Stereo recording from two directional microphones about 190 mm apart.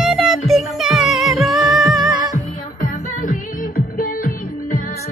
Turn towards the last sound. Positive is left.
turn(degrees=45)  # may be behind; listen again after turning